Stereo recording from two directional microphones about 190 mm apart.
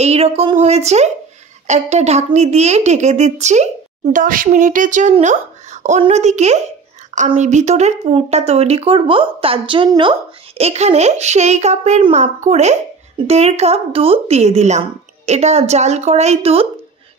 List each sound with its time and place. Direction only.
0.0 s a woman's voice: 35° right (ahead or behind)